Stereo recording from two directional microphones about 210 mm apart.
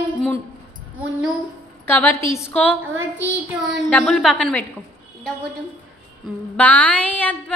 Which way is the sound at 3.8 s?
5° left (ahead or behind).